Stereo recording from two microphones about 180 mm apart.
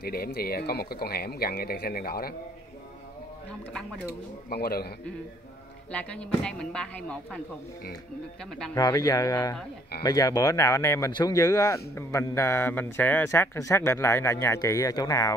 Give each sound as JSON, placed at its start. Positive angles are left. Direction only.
{"t": 0.0, "sound": "speech", "side_deg": 60}
{"t": 4.5, "sound": "speech", "side_deg": 60}
{"t": 5.9, "sound": "speech", "side_deg": 5}
{"t": 8.7, "sound": "speech", "side_deg": 20}